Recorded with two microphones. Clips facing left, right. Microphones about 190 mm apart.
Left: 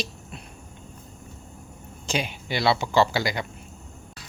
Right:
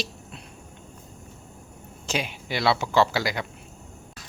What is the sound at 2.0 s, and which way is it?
Speech, 5° right (ahead or behind).